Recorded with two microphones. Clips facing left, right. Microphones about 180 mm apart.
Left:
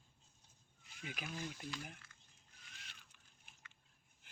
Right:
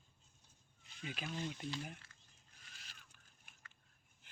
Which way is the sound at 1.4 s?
25° right (ahead or behind).